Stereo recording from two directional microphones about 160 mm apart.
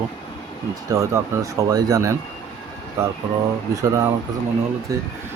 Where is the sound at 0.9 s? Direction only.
20° right (ahead or behind).